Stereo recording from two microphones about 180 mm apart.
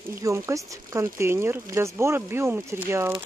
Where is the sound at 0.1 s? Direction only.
15° right (ahead or behind).